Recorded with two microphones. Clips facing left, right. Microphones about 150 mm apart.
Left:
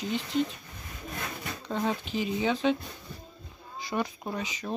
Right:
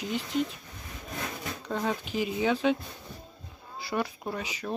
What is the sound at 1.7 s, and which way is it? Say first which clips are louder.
Speech: left 1 dB; 5° left (ahead or behind).